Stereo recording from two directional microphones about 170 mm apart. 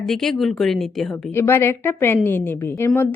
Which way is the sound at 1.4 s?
15° left (ahead or behind).